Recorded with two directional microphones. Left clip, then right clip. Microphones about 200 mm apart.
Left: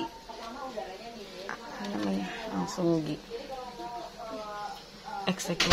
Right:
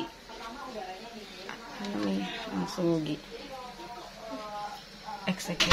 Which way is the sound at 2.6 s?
Centre (ahead or behind).